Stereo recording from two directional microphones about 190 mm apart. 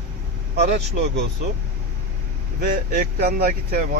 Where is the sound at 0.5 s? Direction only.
60° right (ahead or behind).